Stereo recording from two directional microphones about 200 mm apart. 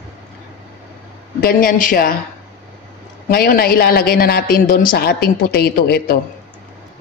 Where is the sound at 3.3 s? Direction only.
45° left (ahead or behind).